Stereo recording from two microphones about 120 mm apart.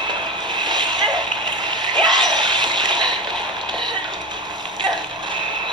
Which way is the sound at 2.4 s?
40° right (ahead or behind).